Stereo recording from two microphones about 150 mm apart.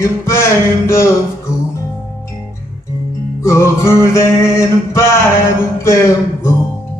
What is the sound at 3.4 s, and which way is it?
Music, 20° left (ahead or behind).